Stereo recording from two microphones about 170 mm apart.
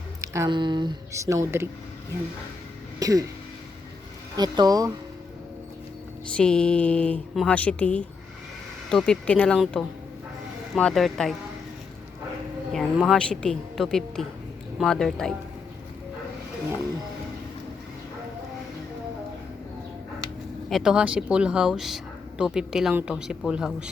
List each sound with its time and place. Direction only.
0.2 s speech: 20° right (ahead or behind)
3.0 s speech: 20° right (ahead or behind)
4.4 s speech: 25° right (ahead or behind)
6.3 s speech: 5° left (ahead or behind)
12.7 s speech: centre (ahead or behind)
20.7 s speech: centre (ahead or behind)